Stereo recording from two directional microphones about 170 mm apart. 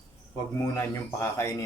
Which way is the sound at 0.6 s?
20° left (ahead or behind).